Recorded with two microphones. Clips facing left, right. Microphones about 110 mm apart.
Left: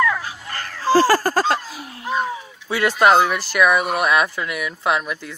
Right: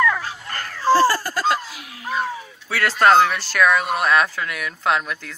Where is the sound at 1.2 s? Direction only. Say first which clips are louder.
Left 3 dB; 40° left (ahead or behind).